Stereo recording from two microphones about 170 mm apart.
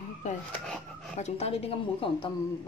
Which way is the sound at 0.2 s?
45° left (ahead or behind).